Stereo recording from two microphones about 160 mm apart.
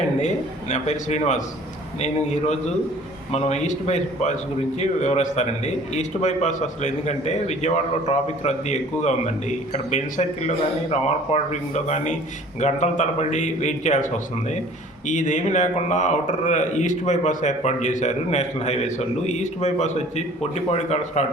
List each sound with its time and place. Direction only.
0.2 s speech: 45° left (ahead or behind)